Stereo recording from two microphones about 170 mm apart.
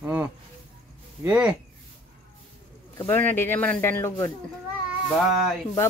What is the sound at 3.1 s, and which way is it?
Speech, 15° left (ahead or behind).